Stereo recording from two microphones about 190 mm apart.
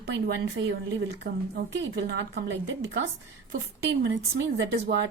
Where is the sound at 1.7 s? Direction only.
65° right (ahead or behind).